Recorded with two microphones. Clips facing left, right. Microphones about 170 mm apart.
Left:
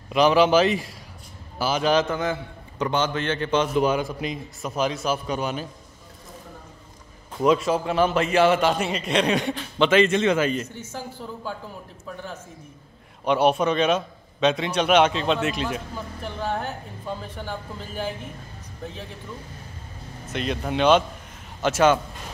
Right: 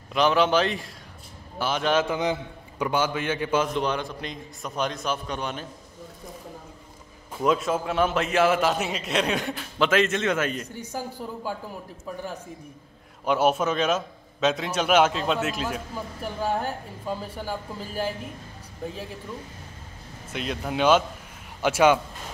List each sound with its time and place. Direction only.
0.1 s a man's voice: 5° left (ahead or behind)
2.0 s speech: 15° right (ahead or behind)
3.6 s a man's voice: 5° left (ahead or behind)
7.3 s a man's voice: centre (ahead or behind)
10.9 s speech: 10° right (ahead or behind)
13.2 s a man's voice: 5° right (ahead or behind)
20.3 s a man's voice: 5° right (ahead or behind)